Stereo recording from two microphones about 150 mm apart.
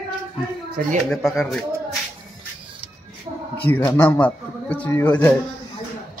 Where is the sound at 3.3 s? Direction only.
40° right (ahead or behind).